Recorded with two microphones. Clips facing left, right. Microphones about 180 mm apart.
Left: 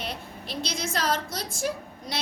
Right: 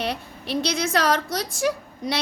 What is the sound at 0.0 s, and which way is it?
A woman's voice, 70° right (ahead or behind).